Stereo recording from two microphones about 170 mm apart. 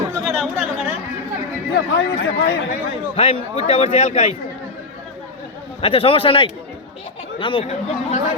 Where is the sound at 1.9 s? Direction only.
90° left.